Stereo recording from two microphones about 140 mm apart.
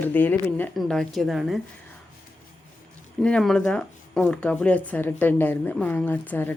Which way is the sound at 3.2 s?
5° left (ahead or behind).